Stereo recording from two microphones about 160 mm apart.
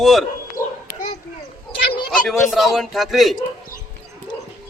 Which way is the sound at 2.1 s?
Centre (ahead or behind).